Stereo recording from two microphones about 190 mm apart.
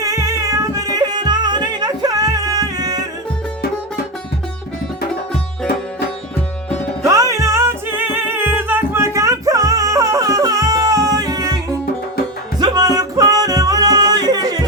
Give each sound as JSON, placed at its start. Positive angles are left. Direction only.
{"t": 0.0, "sound": "music", "side_deg": -15}
{"t": 7.0, "sound": "music", "side_deg": -15}